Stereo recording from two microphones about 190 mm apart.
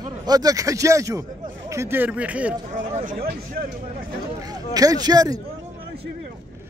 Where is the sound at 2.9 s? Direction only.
35° right (ahead or behind).